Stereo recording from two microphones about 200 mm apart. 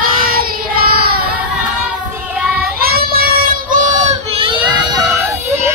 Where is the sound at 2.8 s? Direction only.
50° right (ahead or behind); by 4.5 s 30° right (ahead or behind).